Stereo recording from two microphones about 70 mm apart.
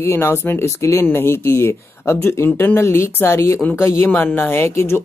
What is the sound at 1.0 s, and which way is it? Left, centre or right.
Speech, left.